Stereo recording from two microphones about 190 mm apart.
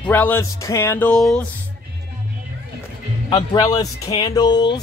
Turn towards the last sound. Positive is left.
turn(degrees=25)  # may be behind; listen again after turning